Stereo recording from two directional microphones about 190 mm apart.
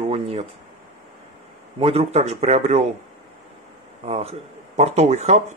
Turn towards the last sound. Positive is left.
turn(degrees=-35)  # may be behind; listen again after turning